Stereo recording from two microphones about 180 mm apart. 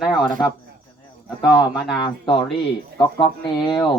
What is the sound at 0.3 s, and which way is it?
Speech, 25° left (ahead or behind).